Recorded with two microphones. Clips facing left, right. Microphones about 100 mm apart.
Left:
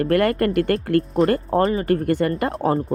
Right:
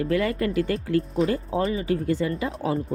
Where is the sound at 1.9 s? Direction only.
65° left (ahead or behind).